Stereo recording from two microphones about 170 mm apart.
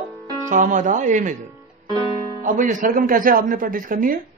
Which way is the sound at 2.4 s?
50° right (ahead or behind).